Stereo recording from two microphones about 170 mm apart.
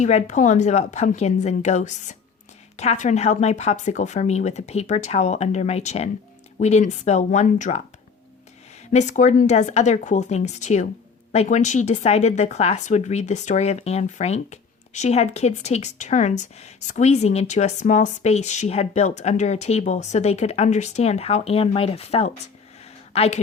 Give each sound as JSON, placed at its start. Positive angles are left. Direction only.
{"t": 0.0, "sound": "a woman's voice", "side_deg": 45}
{"t": 8.9, "sound": "a woman's voice", "side_deg": 45}